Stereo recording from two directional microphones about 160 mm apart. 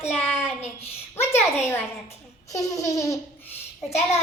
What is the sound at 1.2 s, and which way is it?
Speech, 15° left (ahead or behind).